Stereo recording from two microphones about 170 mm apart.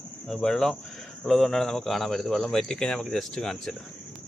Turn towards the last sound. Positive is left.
turn(degrees=5)  # may be behind; listen again after turning